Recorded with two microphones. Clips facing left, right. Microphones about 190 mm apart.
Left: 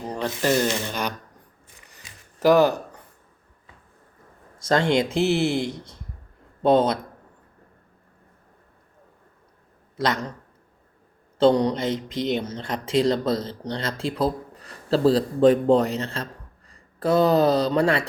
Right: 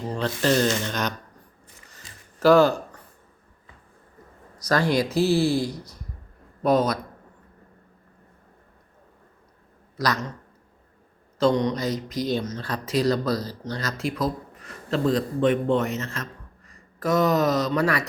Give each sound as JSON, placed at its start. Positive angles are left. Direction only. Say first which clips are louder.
{"t": 0.1, "sound": "speech", "louder": "even", "side_deg": 15}
{"t": 2.0, "sound": "a sound", "louder": "even", "side_deg": 15}
{"t": 4.5, "sound": "speech", "louder": "left 2 dB", "side_deg": 25}
{"t": 10.0, "sound": "speech", "louder": "left 1 dB", "side_deg": 30}
{"t": 11.3, "sound": "speech", "louder": "left 3 dB", "side_deg": 30}